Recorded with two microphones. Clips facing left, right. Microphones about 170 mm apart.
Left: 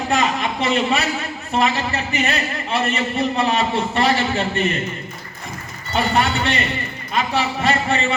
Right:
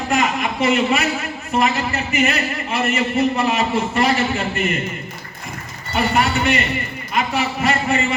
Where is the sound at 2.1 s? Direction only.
35° left (ahead or behind).